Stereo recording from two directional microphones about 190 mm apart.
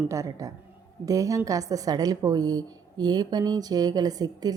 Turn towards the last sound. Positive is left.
turn(degrees=-20)  # may be behind; listen again after turning